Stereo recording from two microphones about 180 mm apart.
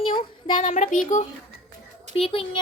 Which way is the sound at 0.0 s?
30° left (ahead or behind).